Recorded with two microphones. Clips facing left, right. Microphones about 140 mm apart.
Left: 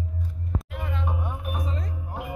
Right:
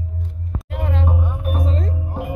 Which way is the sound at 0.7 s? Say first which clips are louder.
Right 12 dB; 90° right.